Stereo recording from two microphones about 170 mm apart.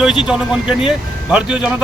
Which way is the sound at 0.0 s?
5° right (ahead or behind).